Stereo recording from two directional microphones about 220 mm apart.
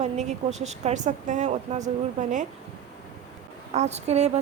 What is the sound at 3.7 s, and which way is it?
Speech, 30° right (ahead or behind).